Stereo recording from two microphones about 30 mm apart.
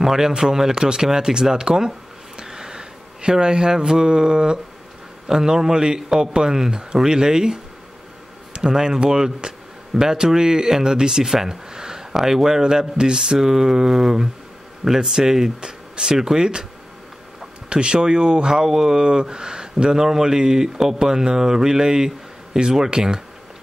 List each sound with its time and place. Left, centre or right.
0.0 s speech: centre
1.9 s a sound: right
5.3 s speech: centre
8.6 s speech: centre
12.6 s speech: right
13.4 s a sound: centre
15.0 s speech: centre
17.6 s speech: right
18.5 s speech: centre